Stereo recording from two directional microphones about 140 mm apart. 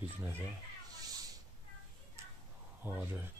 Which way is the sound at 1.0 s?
25° right (ahead or behind).